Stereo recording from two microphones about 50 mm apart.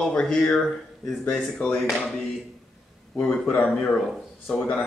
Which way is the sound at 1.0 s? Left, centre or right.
Centre.